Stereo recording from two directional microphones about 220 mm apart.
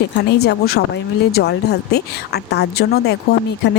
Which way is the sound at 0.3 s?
45° left (ahead or behind).